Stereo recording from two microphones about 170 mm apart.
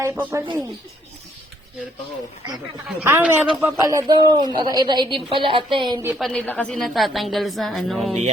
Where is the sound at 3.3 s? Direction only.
15° right (ahead or behind).